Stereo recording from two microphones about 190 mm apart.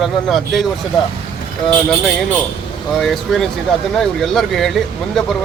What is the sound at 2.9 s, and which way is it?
Speech, centre (ahead or behind).